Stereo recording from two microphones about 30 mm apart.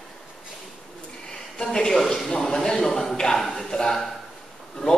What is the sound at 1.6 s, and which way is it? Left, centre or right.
A man's voice, left.